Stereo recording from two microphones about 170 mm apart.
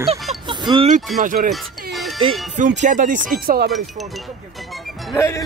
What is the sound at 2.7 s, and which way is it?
Speech, 50° right (ahead or behind).